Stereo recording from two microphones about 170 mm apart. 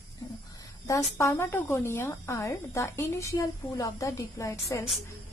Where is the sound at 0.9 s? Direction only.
15° left (ahead or behind).